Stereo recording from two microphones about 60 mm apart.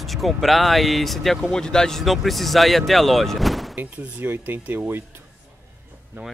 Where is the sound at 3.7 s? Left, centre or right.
Right.